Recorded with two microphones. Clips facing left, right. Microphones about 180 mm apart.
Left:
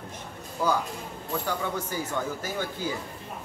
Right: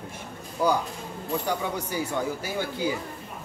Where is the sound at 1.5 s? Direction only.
15° right (ahead or behind).